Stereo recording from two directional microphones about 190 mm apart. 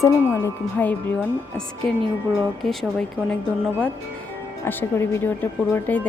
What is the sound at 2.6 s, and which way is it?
Speech, centre (ahead or behind).